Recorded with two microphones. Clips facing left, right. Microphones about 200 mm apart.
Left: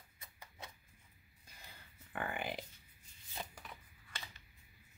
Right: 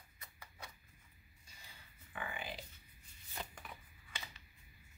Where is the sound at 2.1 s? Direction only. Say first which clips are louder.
Left 5 dB; 55° left (ahead or behind).